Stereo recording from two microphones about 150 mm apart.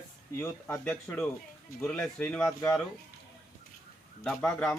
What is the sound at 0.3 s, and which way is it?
Speech, 15° left (ahead or behind).